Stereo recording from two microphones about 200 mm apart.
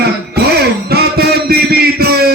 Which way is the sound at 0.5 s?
50° right (ahead or behind).